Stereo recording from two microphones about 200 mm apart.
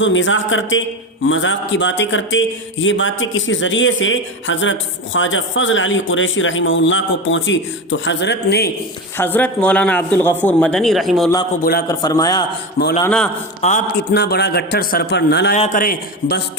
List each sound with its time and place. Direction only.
0.0 s a man's voice: 70° left (ahead or behind); by 8.7 s 55° left (ahead or behind)
9.1 s a man's voice: 10° left (ahead or behind)
11.9 s a man's voice: 20° left (ahead or behind)
13.1 s a man's voice: 5° left (ahead or behind)
13.6 s a man's voice: 40° left (ahead or behind)
13.9 s a man's voice: 55° left (ahead or behind)
15.5 s a man's voice: 35° left (ahead or behind)